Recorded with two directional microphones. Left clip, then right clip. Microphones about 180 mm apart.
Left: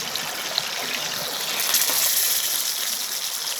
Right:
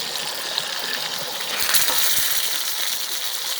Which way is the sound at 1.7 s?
5° right (ahead or behind).